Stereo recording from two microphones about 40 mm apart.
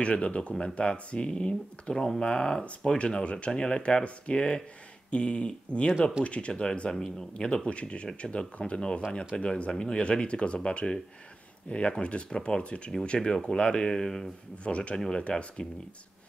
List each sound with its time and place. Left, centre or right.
0.0 s speech: left
12.4 s speech: centre
12.6 s speech: left
14.6 s speech: left